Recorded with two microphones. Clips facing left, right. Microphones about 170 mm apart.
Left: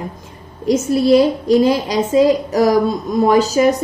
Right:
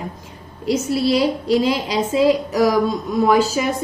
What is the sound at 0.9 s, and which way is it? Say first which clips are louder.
A woman's voice: left 6 dB; 50° left (ahead or behind).